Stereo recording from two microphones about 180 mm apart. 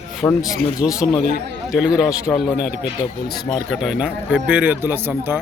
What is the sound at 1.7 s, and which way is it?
Speech, 5° right (ahead or behind).